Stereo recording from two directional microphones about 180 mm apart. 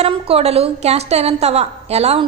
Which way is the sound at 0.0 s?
35° right (ahead or behind).